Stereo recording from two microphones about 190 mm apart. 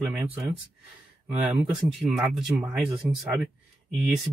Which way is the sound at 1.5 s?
25° right (ahead or behind).